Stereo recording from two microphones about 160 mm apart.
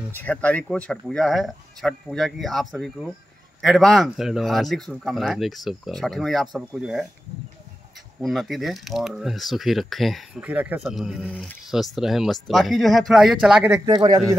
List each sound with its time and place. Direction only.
0.1 s speech: 10° left (ahead or behind)
8.2 s speech: centre (ahead or behind)
13.8 s a man's voice: 25° right (ahead or behind)